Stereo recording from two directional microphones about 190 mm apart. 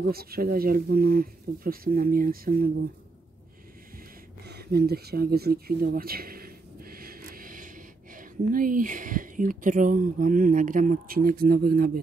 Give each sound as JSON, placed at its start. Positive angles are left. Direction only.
{"t": 0.1, "sound": "speech", "side_deg": -55}
{"t": 4.5, "sound": "speech", "side_deg": -55}